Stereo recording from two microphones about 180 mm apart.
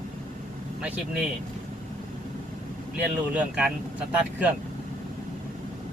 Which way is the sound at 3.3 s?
5° right (ahead or behind).